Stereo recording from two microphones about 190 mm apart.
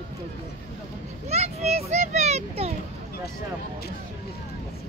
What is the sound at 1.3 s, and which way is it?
Children playing, 35° right (ahead or behind).